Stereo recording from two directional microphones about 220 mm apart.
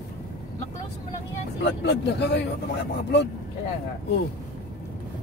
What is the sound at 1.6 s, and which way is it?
Speech, 50° left (ahead or behind).